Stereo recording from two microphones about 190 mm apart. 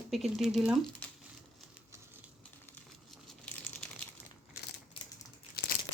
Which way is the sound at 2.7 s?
Centre (ahead or behind).